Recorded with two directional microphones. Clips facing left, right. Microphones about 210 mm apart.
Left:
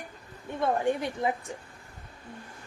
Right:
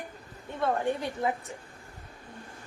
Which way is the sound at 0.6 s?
15° left (ahead or behind).